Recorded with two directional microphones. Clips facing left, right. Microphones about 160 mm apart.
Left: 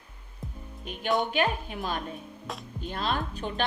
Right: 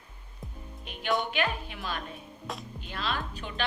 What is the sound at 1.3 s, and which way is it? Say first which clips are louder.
Speech: left 4 dB; 45° left (ahead or behind).